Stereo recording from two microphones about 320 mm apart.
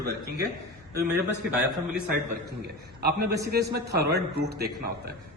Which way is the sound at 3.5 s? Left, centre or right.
Right.